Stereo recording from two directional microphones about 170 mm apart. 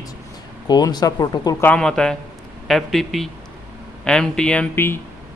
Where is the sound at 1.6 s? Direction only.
5° left (ahead or behind).